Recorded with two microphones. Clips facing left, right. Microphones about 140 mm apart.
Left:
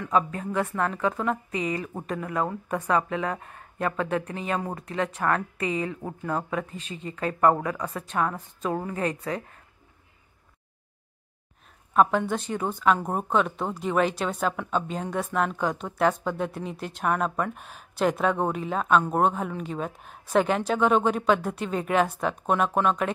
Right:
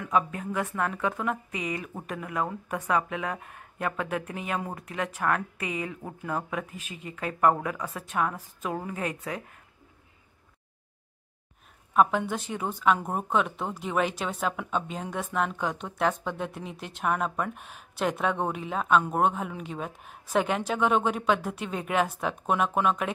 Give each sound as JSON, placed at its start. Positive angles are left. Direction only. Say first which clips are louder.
{"t": 0.1, "sound": "speech", "louder": "left 2 dB", "side_deg": -5}
{"t": 11.9, "sound": "speech", "louder": "left 2 dB", "side_deg": -5}